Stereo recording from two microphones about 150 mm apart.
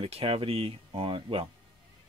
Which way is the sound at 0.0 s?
40° right (ahead or behind).